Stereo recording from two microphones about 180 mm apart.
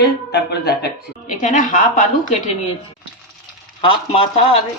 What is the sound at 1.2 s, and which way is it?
A woman's voice, 45° left (ahead or behind).